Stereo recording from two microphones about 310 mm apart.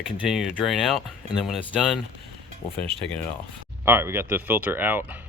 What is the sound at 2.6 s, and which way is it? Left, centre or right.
Speech, centre.